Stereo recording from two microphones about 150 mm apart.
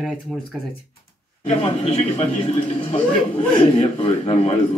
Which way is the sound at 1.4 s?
40° left (ahead or behind).